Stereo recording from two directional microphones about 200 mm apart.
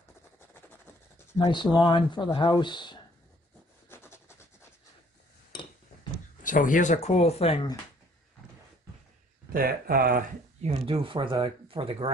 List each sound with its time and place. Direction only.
0.6 s a sound: 10° left (ahead or behind)
1.4 s speech: 25° left (ahead or behind)
3.9 s rub: 10° left (ahead or behind)
6.4 s speech: 40° left (ahead or behind)
9.5 s speech: 45° right (ahead or behind)
10.6 s speech: 30° right (ahead or behind)